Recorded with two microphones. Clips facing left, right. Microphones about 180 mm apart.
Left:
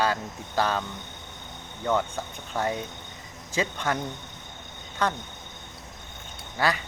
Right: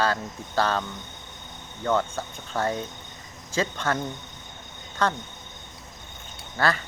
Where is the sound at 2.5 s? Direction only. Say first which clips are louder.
Right 1 dB; 15° left (ahead or behind).